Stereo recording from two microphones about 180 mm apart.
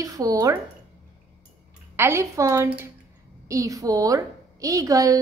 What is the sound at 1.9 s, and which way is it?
A woman's voice, 15° right (ahead or behind).